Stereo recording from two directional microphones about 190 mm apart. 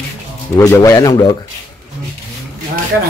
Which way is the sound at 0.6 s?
15° left (ahead or behind).